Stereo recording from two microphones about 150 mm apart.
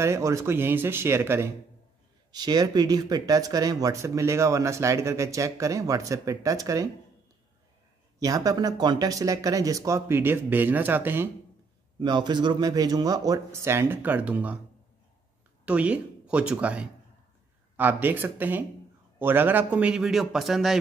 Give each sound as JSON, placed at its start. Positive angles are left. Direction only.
{"t": 0.0, "sound": "speech", "side_deg": -20}
{"t": 2.3, "sound": "speech", "side_deg": -25}
{"t": 8.2, "sound": "speech", "side_deg": -25}
{"t": 12.0, "sound": "speech", "side_deg": -30}
{"t": 15.6, "sound": "a man's voice", "side_deg": -10}